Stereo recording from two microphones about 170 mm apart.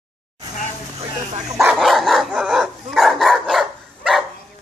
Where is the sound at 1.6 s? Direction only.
Centre (ahead or behind).